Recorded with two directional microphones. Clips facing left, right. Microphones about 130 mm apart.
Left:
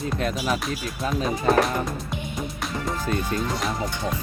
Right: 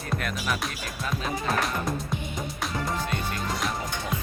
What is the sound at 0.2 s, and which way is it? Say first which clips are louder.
Speech: left 5 dB; 30° left (ahead or behind).